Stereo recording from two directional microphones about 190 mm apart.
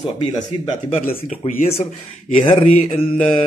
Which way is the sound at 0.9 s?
45° left (ahead or behind).